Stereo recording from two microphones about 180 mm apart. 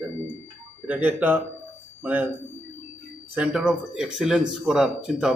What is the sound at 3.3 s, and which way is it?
A man's voice, 5° right (ahead or behind).